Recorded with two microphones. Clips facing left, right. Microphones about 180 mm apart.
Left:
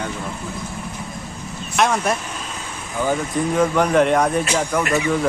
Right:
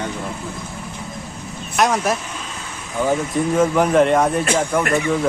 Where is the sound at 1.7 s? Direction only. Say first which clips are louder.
Right 1 dB; centre (ahead or behind).